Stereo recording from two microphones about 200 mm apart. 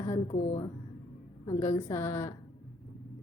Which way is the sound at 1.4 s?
15° left (ahead or behind).